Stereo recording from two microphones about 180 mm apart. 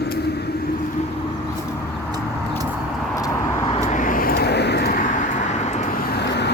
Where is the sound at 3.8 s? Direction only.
45° left (ahead or behind).